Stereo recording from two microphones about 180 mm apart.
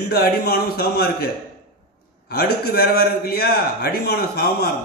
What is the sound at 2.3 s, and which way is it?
A man's voice, 60° left (ahead or behind).